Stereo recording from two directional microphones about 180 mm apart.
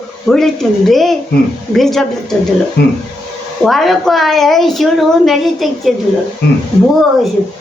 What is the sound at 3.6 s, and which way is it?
A woman's voice, centre (ahead or behind).